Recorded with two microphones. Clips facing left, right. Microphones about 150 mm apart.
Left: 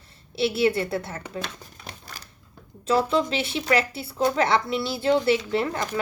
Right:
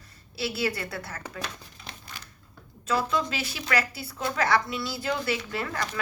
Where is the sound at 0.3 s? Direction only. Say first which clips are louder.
Left 8 dB; 25° left (ahead or behind).